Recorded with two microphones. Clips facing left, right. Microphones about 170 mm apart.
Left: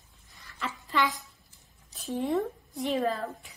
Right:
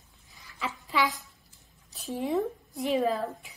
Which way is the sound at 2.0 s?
Centre (ahead or behind).